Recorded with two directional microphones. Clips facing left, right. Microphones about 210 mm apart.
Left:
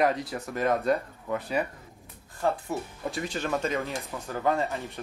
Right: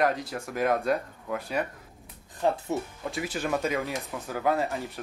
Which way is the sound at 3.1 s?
5° right (ahead or behind).